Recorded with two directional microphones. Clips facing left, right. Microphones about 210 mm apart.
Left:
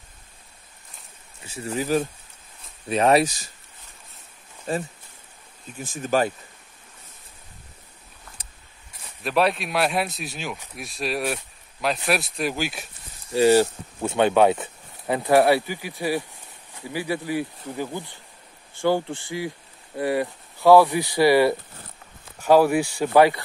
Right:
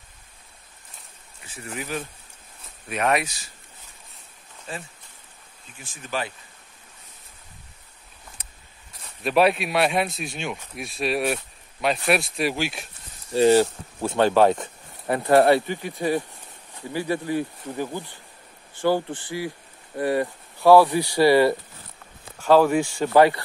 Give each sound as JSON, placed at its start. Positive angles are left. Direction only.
{"t": 1.4, "sound": "speech", "side_deg": 30}
{"t": 4.7, "sound": "speech", "side_deg": 40}
{"t": 9.0, "sound": "speech", "side_deg": 0}
{"t": 13.3, "sound": "speech", "side_deg": 10}